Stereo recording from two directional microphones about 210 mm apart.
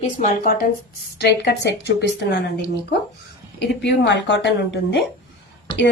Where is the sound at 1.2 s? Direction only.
55° left (ahead or behind).